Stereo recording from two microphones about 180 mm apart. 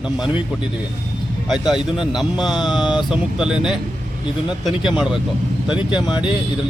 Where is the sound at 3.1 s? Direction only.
5° right (ahead or behind).